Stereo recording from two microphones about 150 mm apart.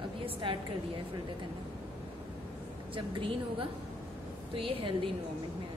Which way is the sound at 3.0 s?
35° right (ahead or behind).